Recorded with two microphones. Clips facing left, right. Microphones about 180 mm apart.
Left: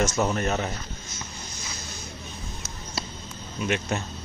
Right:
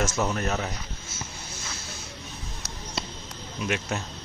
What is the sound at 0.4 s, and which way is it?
Speech, centre (ahead or behind).